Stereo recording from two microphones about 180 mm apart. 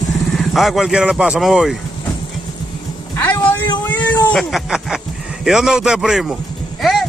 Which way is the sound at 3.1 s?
10° left (ahead or behind).